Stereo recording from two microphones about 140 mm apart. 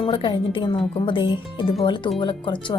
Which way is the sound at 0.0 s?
35° left (ahead or behind).